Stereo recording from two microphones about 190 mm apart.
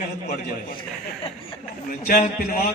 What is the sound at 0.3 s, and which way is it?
Speech, 50° left (ahead or behind).